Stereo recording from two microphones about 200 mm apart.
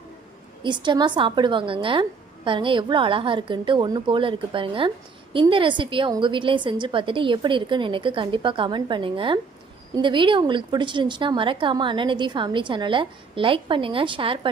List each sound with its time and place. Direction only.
0.6 s a woman's voice: 25° right (ahead or behind)